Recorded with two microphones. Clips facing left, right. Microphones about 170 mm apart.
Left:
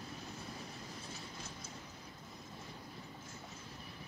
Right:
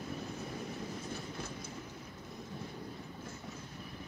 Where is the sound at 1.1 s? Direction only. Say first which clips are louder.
Right 7 dB; 60° right (ahead or behind).